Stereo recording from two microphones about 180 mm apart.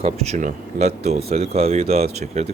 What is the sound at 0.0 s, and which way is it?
Speech, 35° right (ahead or behind).